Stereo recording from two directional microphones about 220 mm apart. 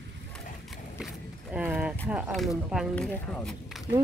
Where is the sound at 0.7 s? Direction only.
Centre (ahead or behind).